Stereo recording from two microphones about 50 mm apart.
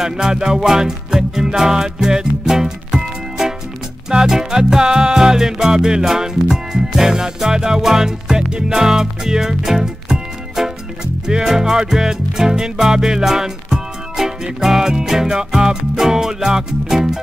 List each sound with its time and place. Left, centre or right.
0.0 s music: centre